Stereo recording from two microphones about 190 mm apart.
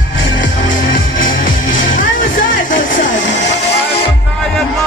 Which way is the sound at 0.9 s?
45° left (ahead or behind).